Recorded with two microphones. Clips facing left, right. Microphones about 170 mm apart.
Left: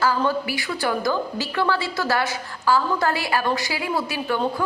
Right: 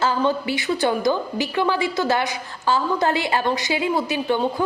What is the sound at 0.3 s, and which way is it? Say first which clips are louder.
A woman's voice: right 3 dB; 20° right (ahead or behind).